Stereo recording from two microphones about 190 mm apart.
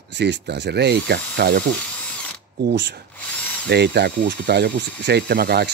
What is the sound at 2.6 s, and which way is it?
Speech, 65° right (ahead or behind).